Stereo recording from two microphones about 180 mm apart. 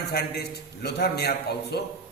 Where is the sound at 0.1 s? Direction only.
60° left (ahead or behind).